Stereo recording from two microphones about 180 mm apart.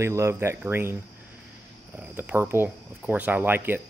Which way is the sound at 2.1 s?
10° right (ahead or behind).